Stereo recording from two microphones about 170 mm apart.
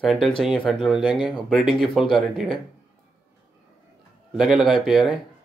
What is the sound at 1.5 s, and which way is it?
A man's voice, centre (ahead or behind).